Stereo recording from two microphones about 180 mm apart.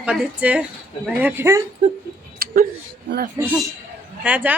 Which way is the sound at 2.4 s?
60° right (ahead or behind).